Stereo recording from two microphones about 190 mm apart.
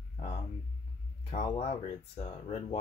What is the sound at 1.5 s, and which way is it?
Speech, 35° left (ahead or behind).